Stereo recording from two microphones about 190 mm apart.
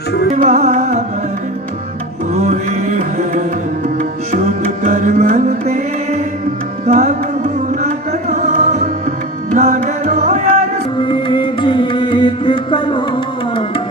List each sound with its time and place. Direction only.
0.4 s music: 35° right (ahead or behind)
2.3 s music: 35° right (ahead or behind)
11.0 s music: 25° left (ahead or behind)